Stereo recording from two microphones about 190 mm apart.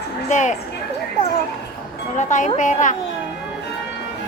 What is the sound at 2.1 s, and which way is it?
Speech, 40° left (ahead or behind).